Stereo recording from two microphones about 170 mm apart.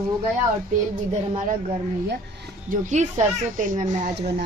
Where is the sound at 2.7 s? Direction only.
45° right (ahead or behind).